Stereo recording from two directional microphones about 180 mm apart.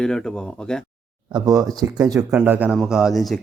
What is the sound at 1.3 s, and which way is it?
Speech, 20° right (ahead or behind).